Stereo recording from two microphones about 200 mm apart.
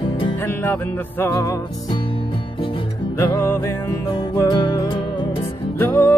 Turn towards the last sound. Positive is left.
turn(degrees=10)  # may be behind; listen again after turning